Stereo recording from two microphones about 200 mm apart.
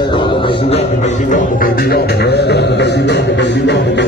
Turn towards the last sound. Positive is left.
turn(degrees=60)  # may be behind; listen again after turning